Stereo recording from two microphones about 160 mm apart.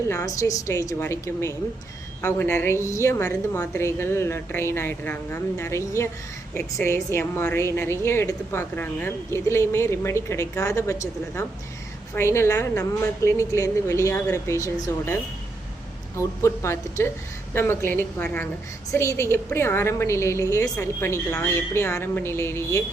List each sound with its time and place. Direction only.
0.1 s a woman's voice: 20° left (ahead or behind)
16.1 s a woman's voice: 15° left (ahead or behind)